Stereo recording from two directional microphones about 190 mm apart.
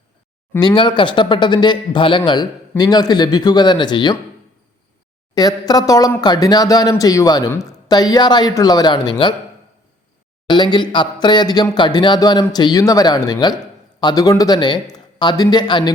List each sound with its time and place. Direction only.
0.5 s speech: 25° left (ahead or behind)
5.3 s speech: 20° left (ahead or behind)
10.4 s speech: 25° left (ahead or behind)